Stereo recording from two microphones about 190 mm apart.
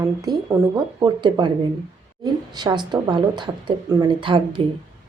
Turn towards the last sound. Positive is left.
turn(degrees=-25)  # may be behind; listen again after turning